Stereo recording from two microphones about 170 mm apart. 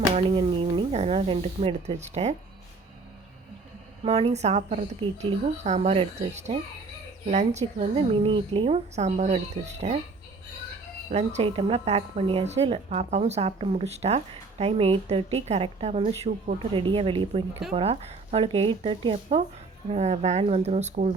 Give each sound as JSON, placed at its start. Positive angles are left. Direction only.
{"t": 0.1, "sound": "a woman's voice", "side_deg": -35}
{"t": 4.0, "sound": "a woman's voice", "side_deg": -40}
{"t": 11.1, "sound": "a woman's voice", "side_deg": -40}